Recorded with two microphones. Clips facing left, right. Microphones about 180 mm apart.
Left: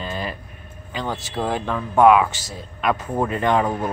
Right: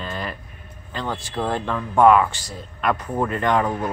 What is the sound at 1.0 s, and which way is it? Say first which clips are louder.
Speech: even; 5° left (ahead or behind).